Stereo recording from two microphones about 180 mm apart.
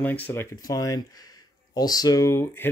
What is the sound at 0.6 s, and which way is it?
Speech, 20° left (ahead or behind).